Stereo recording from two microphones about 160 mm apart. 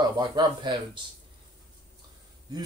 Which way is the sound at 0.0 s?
25° right (ahead or behind).